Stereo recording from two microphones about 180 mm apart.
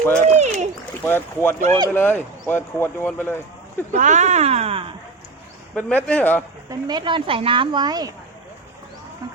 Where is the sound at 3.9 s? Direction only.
45° right (ahead or behind).